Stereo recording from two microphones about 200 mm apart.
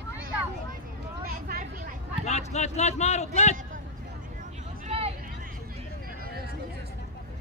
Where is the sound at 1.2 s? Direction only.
50° right (ahead or behind).